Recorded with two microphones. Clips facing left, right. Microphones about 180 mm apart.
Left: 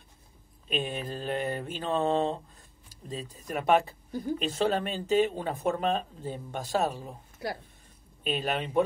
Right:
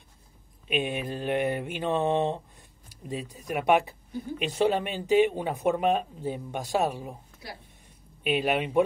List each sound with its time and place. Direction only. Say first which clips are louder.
0.7 s speech: right 3 dB; 10° right (ahead or behind)
8.2 s speech: right 4 dB; 15° right (ahead or behind)